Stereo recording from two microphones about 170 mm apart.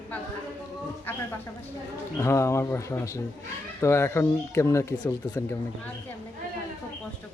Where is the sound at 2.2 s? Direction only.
15° left (ahead or behind).